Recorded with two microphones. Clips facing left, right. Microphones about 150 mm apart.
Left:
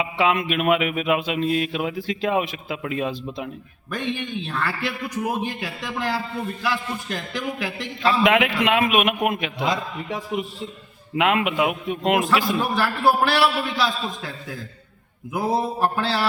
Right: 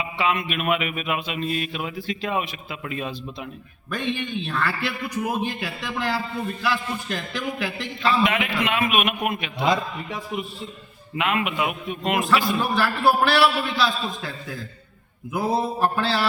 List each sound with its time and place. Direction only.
0.0 s mantra: 90° left
3.8 s a man's voice: 20° left (ahead or behind)
8.2 s mantra: 90° left
12.5 s a man's voice: 20° left (ahead or behind)